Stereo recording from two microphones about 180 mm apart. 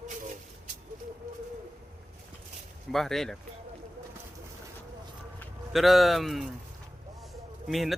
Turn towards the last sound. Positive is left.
turn(degrees=0)  # may be behind; listen again after turning